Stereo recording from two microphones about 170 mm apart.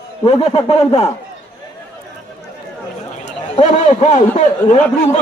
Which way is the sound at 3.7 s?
45° left (ahead or behind).